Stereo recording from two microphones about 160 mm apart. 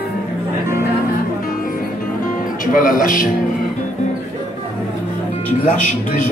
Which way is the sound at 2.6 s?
60° left (ahead or behind).